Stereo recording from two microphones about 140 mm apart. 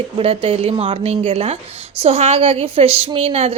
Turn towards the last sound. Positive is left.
turn(degrees=-45)  # may be behind; listen again after turning